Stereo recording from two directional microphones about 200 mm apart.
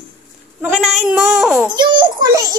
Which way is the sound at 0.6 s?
Centre (ahead or behind).